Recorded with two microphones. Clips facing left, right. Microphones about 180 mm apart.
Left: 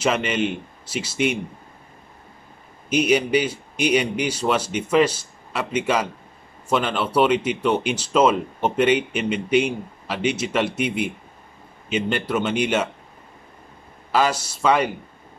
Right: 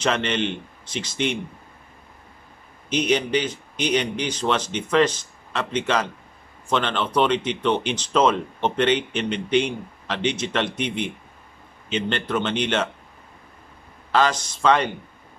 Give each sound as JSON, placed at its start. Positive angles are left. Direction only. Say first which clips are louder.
{"t": 0.0, "sound": "speech", "louder": "left 2 dB", "side_deg": 10}
{"t": 2.9, "sound": "speech", "louder": "left 3 dB", "side_deg": 10}
{"t": 14.1, "sound": "speech", "louder": "even", "side_deg": 10}